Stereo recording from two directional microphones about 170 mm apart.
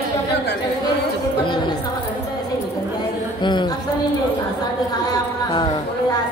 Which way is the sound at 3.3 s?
25° left (ahead or behind).